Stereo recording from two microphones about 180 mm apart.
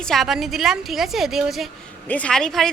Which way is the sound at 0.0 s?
Centre (ahead or behind).